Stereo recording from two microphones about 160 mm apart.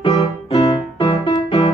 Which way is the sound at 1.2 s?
35° left (ahead or behind).